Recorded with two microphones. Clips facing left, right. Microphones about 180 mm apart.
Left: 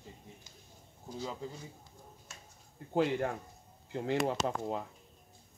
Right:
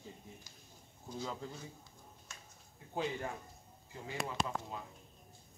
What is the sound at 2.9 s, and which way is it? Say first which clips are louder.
Speech: left 8 dB; 65° left (ahead or behind).